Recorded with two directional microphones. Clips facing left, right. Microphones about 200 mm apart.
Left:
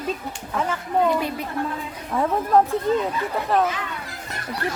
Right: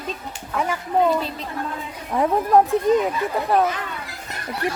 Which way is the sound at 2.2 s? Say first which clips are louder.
Right 2 dB; 15° right (ahead or behind).